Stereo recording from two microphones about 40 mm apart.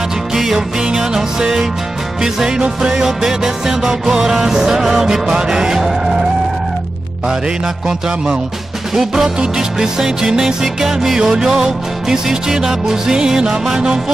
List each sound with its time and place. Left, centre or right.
0.3 s music: centre
8.9 s music: centre